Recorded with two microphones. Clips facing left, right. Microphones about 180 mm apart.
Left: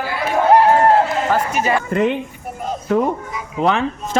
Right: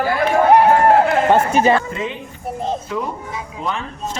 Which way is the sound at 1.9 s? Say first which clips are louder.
Left 8 dB; 60° left (ahead or behind).